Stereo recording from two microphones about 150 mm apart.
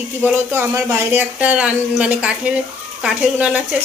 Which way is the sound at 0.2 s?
15° right (ahead or behind).